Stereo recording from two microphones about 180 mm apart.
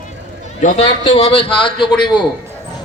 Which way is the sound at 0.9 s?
30° left (ahead or behind).